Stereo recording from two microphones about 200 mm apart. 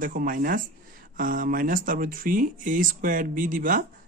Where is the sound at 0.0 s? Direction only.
45° right (ahead or behind).